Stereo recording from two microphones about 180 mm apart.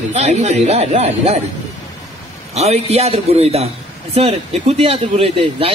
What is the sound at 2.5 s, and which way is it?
A woman's voice, 35° right (ahead or behind).